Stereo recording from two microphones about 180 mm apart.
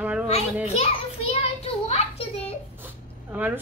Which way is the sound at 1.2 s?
35° left (ahead or behind).